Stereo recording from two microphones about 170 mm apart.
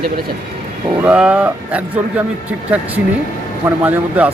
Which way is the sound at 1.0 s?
5° right (ahead or behind).